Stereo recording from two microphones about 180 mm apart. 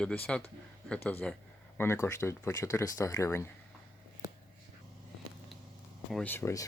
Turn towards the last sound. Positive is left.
turn(degrees=15)  # may be behind; listen again after turning